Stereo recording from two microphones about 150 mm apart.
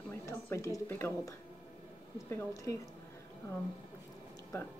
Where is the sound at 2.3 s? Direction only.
20° left (ahead or behind).